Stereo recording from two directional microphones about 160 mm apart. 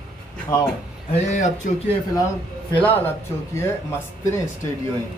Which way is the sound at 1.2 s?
45° left (ahead or behind).